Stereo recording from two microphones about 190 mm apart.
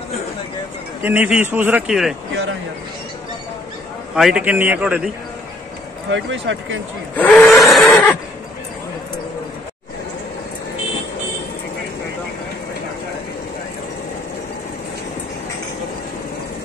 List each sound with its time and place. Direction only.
1.0 s a man's voice: 10° right (ahead or behind)
4.1 s a man's voice: 5° right (ahead or behind)
6.0 s speech: 75° right (ahead or behind)
7.2 s a sound: 5° left (ahead or behind)